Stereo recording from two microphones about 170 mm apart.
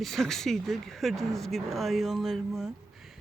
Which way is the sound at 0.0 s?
Centre (ahead or behind).